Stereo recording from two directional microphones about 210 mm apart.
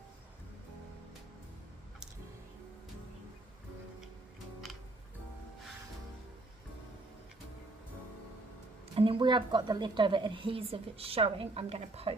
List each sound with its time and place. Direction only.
9.0 s a woman's voice: 25° right (ahead or behind)